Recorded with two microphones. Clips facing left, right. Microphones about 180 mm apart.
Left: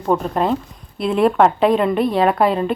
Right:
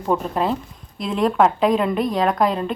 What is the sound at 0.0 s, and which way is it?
A woman's voice, centre (ahead or behind).